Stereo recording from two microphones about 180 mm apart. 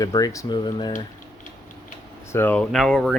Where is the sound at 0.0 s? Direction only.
20° left (ahead or behind).